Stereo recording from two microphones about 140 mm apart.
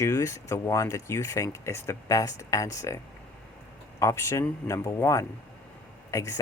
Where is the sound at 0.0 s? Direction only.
20° left (ahead or behind).